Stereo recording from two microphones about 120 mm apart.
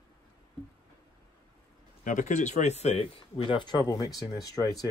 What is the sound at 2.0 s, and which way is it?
Speech, 90° left.